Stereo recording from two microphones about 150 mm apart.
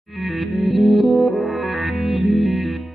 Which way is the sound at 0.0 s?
Centre (ahead or behind).